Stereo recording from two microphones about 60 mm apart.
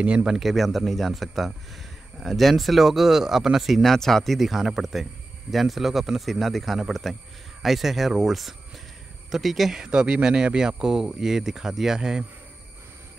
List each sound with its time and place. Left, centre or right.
0.0 s speech: centre
0.4 s speech: centre